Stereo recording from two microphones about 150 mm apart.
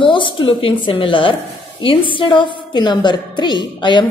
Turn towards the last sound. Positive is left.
turn(degrees=30)  # may be behind; listen again after turning